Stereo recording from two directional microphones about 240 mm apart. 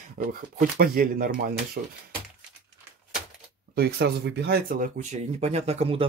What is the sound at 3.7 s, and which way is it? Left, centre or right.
Speech, right.